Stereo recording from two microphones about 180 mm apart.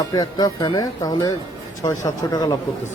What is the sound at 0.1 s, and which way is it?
Speech, 20° left (ahead or behind).